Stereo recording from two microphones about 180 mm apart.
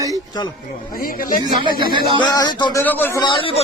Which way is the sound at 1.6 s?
25° right (ahead or behind).